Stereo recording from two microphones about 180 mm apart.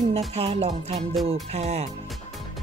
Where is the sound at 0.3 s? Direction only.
35° right (ahead or behind).